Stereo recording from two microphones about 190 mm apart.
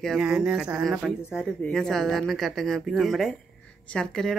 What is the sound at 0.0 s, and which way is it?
Speech, centre (ahead or behind).